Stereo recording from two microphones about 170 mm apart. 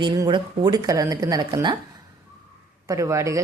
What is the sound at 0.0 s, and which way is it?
A woman's voice, 25° right (ahead or behind).